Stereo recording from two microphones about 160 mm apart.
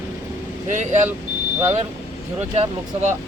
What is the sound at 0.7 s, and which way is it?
Speech, 50° right (ahead or behind).